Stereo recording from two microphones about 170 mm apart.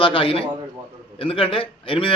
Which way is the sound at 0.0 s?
30° left (ahead or behind).